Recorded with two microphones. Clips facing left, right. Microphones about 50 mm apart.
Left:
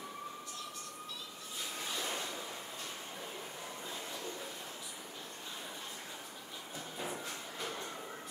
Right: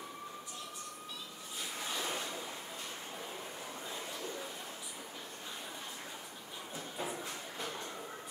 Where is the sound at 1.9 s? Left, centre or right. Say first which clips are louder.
Right 1 dB; centre.